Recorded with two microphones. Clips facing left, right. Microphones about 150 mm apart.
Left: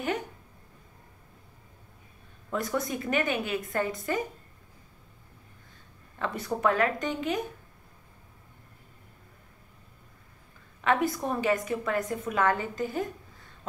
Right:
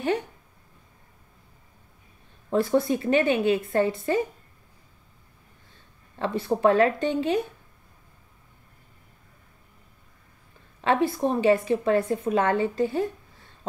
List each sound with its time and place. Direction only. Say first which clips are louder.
2.5 s a woman's voice: right 8 dB; 30° right (ahead or behind)
6.1 s a woman's voice: right 6 dB; 25° right (ahead or behind)
10.8 s a woman's voice: right 4 dB; 30° right (ahead or behind)